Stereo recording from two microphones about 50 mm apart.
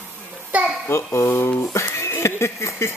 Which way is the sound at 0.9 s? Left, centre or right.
Left.